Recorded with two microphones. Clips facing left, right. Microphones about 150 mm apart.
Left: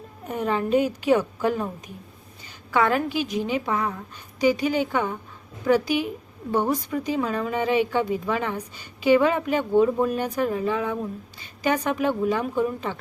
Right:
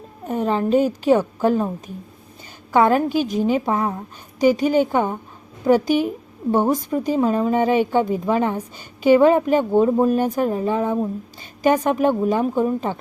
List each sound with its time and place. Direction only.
0.3 s a woman's voice: 35° right (ahead or behind)
2.7 s a woman's voice: 45° right (ahead or behind)
5.6 s a woman's voice: 45° right (ahead or behind)
7.2 s a woman's voice: 35° right (ahead or behind)
10.8 s speech: 25° right (ahead or behind)
11.6 s a woman's voice: 45° right (ahead or behind)